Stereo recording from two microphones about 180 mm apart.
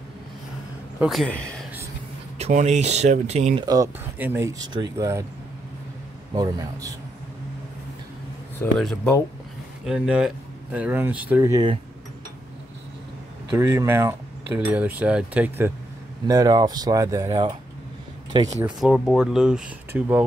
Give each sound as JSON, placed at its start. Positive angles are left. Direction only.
{"t": 0.9, "sound": "speech", "side_deg": 0}
{"t": 2.3, "sound": "speech", "side_deg": -40}
{"t": 3.6, "sound": "speech", "side_deg": -20}
{"t": 6.3, "sound": "speech", "side_deg": -20}
{"t": 8.5, "sound": "speech", "side_deg": 5}
{"t": 9.8, "sound": "speech", "side_deg": -5}
{"t": 13.5, "sound": "speech", "side_deg": -15}
{"t": 16.3, "sound": "speech", "side_deg": -20}
{"t": 18.8, "sound": "speech", "side_deg": 0}